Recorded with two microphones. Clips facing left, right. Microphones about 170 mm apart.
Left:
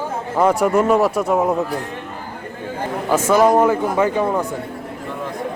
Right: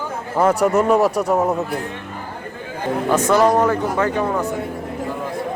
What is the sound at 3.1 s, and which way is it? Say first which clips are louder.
Speech: left 1 dB; 10° left (ahead or behind).